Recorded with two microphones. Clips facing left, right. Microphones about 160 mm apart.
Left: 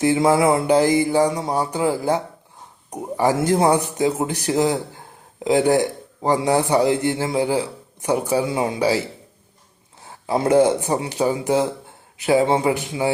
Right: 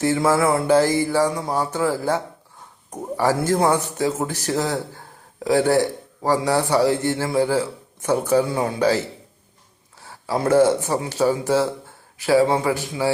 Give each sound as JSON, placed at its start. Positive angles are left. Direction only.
{"t": 0.0, "sound": "speech", "side_deg": 15}
{"t": 10.0, "sound": "speech", "side_deg": 20}